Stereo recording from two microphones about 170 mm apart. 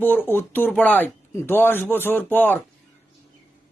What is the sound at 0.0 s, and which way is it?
Speech, 10° left (ahead or behind).